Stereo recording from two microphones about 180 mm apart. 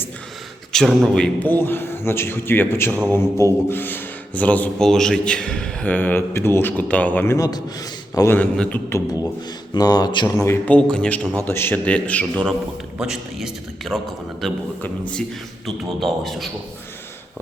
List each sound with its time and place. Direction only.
0.7 s speech: 5° left (ahead or behind)
9.7 s speech: 25° left (ahead or behind)
10.4 s speech: 10° left (ahead or behind)
13.0 s a man's voice: 5° right (ahead or behind)